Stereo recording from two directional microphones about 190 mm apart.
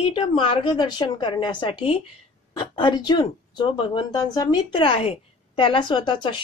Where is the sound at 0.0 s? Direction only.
25° left (ahead or behind).